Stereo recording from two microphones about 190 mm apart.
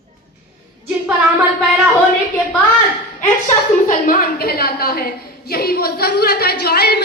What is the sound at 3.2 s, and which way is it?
A woman's voice, 40° left (ahead or behind).